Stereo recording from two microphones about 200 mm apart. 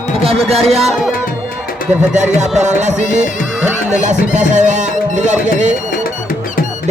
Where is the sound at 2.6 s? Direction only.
35° right (ahead or behind).